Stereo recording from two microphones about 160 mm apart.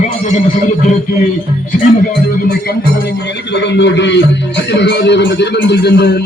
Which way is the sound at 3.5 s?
90° left.